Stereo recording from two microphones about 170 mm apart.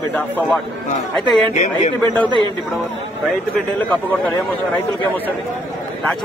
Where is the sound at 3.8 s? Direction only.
5° left (ahead or behind).